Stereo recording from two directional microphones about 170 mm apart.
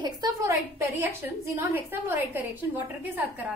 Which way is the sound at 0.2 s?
25° right (ahead or behind).